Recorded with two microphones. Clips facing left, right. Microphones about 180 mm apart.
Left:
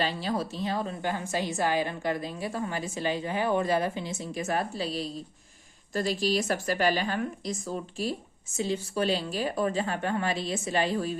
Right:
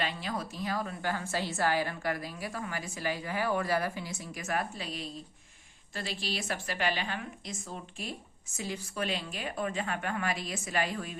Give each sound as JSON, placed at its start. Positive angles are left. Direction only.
{"t": 0.0, "sound": "a woman's voice", "side_deg": 30}